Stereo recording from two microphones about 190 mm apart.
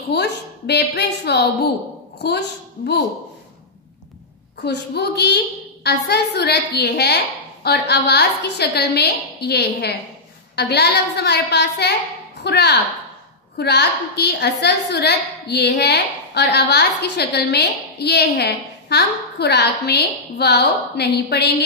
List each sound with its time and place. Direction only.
0.1 s a woman's voice: 60° left (ahead or behind)
4.6 s a woman's voice: 60° left (ahead or behind)